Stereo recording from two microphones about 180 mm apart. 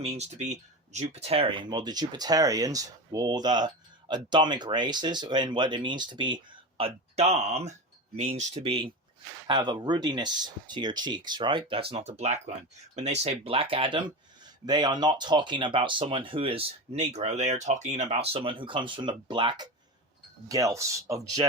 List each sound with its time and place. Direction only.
0.0 s speech: 35° right (ahead or behind); by 21.4 s 15° right (ahead or behind)